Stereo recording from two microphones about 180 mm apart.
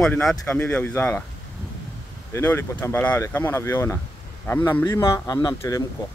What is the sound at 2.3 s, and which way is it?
Speech, 15° left (ahead or behind).